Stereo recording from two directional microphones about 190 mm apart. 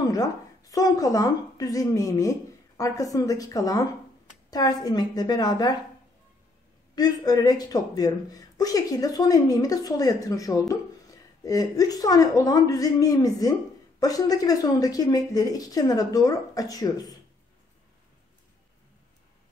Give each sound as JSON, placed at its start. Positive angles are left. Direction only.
{"t": 0.1, "sound": "a woman's voice", "side_deg": 20}
{"t": 7.0, "sound": "a woman's voice", "side_deg": 20}